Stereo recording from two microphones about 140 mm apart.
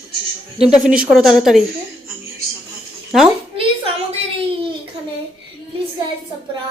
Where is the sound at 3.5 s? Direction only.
45° right (ahead or behind).